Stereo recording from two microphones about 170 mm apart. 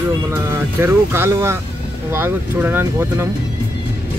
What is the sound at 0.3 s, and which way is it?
Speech, 15° right (ahead or behind).